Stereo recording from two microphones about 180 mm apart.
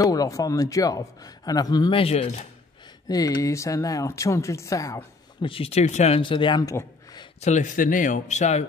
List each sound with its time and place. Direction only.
0.0 s a man's voice: 20° left (ahead or behind); by 2.4 s 35° left (ahead or behind)
3.1 s speech: 20° left (ahead or behind)
5.4 s a man's voice: 30° left (ahead or behind)
7.3 s speech: 40° left (ahead or behind)